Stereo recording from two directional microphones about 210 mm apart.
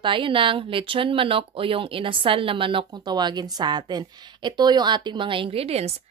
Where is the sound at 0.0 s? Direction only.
25° right (ahead or behind).